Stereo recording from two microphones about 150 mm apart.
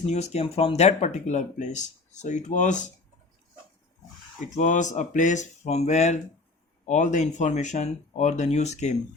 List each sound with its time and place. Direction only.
0.0 s speech: 50° left (ahead or behind)
4.4 s speech: 55° left (ahead or behind)